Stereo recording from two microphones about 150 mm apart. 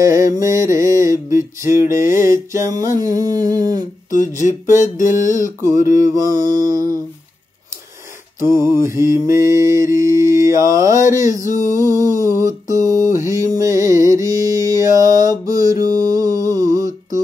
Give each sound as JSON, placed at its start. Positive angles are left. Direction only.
{"t": 0.0, "sound": "mantra", "side_deg": -20}
{"t": 4.1, "sound": "speech", "side_deg": 60}
{"t": 4.7, "sound": "music", "side_deg": 55}
{"t": 5.1, "sound": "speech", "side_deg": 55}
{"t": 6.4, "sound": "mantra", "side_deg": -25}
{"t": 8.8, "sound": "mantra", "side_deg": -20}
{"t": 11.7, "sound": "music", "side_deg": -20}